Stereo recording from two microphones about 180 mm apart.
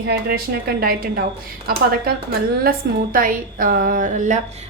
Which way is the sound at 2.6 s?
50° right (ahead or behind).